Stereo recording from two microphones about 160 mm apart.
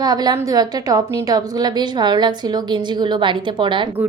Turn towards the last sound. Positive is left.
turn(degrees=-30)  # may be behind; listen again after turning